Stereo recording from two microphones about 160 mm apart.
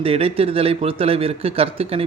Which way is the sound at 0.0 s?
35° right (ahead or behind).